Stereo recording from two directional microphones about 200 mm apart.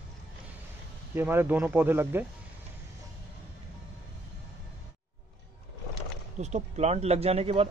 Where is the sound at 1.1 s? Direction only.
10° right (ahead or behind).